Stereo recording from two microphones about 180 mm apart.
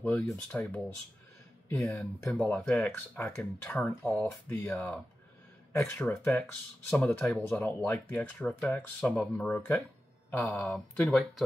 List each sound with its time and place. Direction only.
0.0 s speech: 10° left (ahead or behind)